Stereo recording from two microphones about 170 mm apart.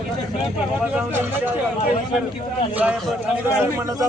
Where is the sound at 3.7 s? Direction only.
20° right (ahead or behind).